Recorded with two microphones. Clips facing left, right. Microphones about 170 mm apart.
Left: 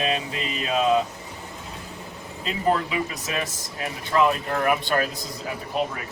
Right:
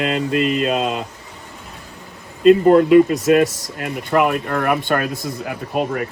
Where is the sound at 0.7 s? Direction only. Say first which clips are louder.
Left 1 dB; 70° right (ahead or behind).